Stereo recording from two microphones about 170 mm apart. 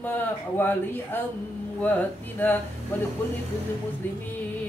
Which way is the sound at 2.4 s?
10° left (ahead or behind).